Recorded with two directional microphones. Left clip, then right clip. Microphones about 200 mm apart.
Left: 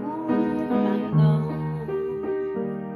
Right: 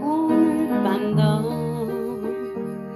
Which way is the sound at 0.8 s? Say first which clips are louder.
Right 3 dB; 50° right (ahead or behind).